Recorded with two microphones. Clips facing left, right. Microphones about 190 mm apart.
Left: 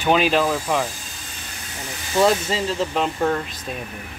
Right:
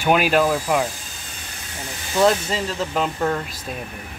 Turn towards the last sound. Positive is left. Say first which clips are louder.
# left 1 dB
turn(degrees=0)  # may be behind; listen again after turning